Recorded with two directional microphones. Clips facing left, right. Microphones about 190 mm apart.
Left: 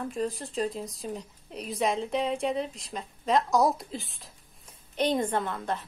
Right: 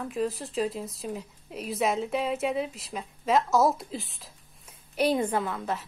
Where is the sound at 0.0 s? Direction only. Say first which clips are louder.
Right 1 dB; centre (ahead or behind).